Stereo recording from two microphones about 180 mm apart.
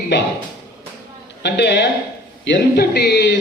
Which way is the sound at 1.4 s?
70° left (ahead or behind).